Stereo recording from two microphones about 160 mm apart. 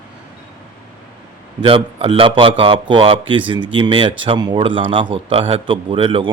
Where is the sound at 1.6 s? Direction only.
35° right (ahead or behind).